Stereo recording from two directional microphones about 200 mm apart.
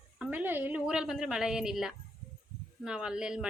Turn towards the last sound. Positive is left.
turn(degrees=-5)  # may be behind; listen again after turning